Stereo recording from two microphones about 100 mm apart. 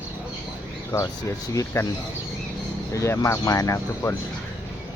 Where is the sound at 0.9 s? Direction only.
30° left (ahead or behind).